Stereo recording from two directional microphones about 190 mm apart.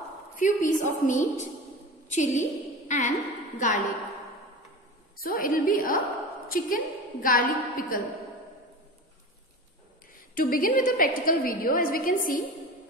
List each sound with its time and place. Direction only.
0.4 s a woman's voice: 40° left (ahead or behind)
5.2 s a woman's voice: 50° left (ahead or behind)
10.3 s a woman's voice: 50° left (ahead or behind)